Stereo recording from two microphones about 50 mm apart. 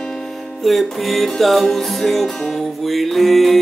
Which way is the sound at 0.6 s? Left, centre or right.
Centre.